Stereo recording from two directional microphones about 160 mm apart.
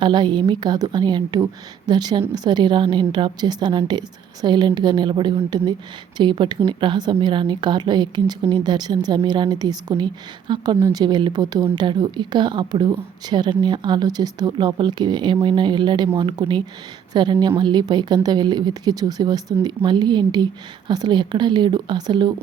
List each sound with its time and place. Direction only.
0.0 s a woman's voice: 30° right (ahead or behind)
11.0 s a woman's voice: 25° right (ahead or behind)